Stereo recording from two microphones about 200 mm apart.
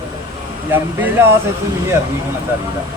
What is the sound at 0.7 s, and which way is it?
Speech, 10° right (ahead or behind).